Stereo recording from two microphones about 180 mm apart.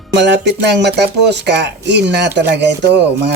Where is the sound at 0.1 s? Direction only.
70° right (ahead or behind).